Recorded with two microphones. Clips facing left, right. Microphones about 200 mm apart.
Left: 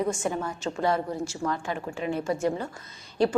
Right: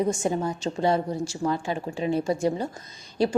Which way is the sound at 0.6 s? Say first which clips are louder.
Right 1 dB; 30° right (ahead or behind).